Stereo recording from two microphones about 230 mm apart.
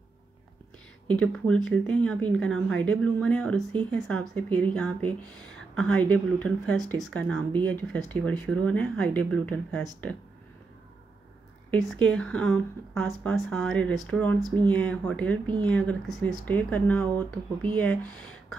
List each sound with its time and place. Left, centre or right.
1.0 s speech: centre
11.7 s speech: centre
14.4 s speech: centre
14.7 s speech: centre